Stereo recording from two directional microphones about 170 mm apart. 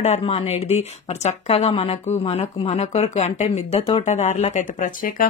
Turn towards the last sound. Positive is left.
turn(degrees=50)  # may be behind; listen again after turning